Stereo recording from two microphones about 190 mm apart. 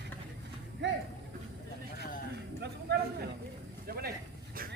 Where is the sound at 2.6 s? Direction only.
55° right (ahead or behind).